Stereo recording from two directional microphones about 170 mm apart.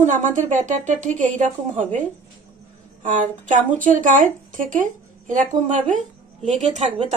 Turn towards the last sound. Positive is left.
turn(degrees=-40)  # may be behind; listen again after turning